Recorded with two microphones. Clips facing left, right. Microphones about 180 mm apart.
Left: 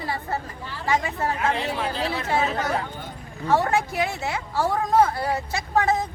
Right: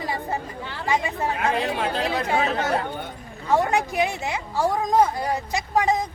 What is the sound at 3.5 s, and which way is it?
A woman's voice, 15° right (ahead or behind).